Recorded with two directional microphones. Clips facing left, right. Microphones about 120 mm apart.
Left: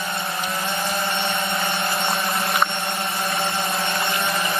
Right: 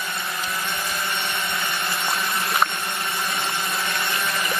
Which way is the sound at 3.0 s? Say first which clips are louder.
Left 3 dB; 30° left (ahead or behind).